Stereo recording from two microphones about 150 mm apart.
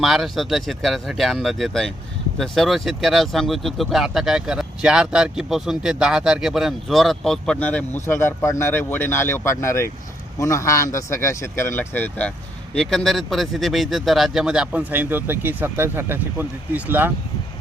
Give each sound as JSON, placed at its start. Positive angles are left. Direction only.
{"t": 0.0, "sound": "speech", "side_deg": 0}